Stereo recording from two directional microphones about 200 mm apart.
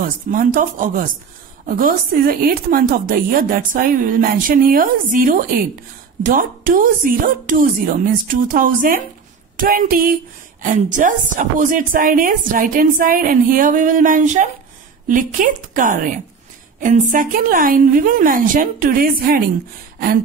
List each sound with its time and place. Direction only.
0.0 s speech: 45° right (ahead or behind)